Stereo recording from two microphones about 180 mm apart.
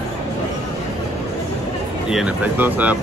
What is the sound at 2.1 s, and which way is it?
Speech, 5° right (ahead or behind).